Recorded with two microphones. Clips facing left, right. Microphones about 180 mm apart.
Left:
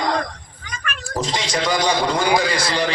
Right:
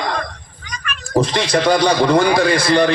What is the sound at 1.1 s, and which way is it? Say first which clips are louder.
Speech: right 7 dB; 60° right (ahead or behind).